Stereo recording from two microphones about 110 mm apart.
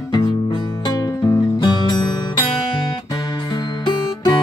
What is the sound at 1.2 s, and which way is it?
Music, 25° left (ahead or behind).